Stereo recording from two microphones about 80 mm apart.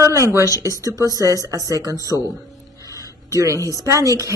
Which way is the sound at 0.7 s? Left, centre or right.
Left.